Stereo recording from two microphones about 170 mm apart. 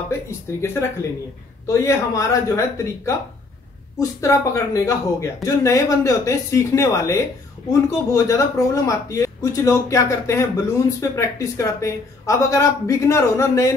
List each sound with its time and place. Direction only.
0.1 s speech: 15° left (ahead or behind)